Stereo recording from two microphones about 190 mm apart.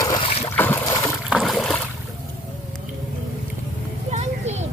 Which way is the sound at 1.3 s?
Centre (ahead or behind).